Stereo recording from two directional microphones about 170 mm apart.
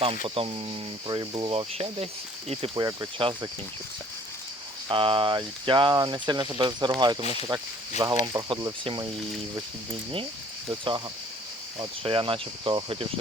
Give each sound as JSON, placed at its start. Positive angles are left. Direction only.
{"t": 0.3, "sound": "speech", "side_deg": -30}
{"t": 4.9, "sound": "speech", "side_deg": -30}
{"t": 10.7, "sound": "speech", "side_deg": -25}